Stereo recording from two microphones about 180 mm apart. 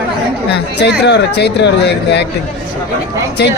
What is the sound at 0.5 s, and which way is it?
Speech, 70° left (ahead or behind).